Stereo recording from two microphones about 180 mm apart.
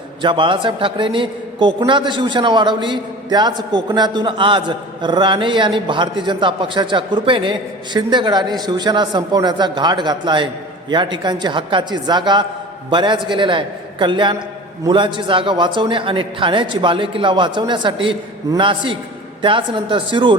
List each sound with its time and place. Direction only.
0.2 s a man's voice: 25° right (ahead or behind)